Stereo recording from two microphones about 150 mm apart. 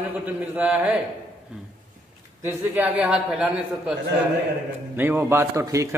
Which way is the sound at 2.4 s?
10° right (ahead or behind).